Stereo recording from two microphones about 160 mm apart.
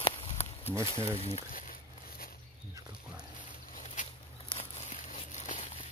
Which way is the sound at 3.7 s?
50° left (ahead or behind).